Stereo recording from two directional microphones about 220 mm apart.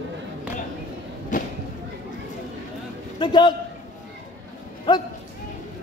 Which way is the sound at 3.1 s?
20° left (ahead or behind).